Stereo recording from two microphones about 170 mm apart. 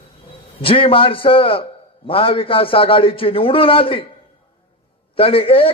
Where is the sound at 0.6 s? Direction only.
30° left (ahead or behind).